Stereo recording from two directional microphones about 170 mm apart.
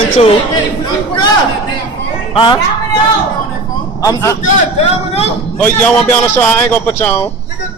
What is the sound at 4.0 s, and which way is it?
Speech, 20° left (ahead or behind).